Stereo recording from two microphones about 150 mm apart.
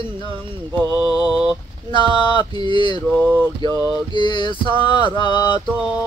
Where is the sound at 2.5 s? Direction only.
30° left (ahead or behind).